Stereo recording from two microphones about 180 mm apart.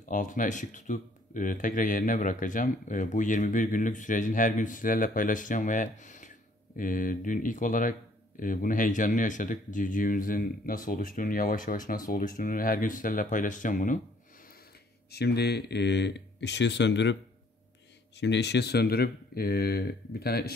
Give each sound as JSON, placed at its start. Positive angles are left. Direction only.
{"t": 0.0, "sound": "speech", "side_deg": 45}
{"t": 15.0, "sound": "speech", "side_deg": 65}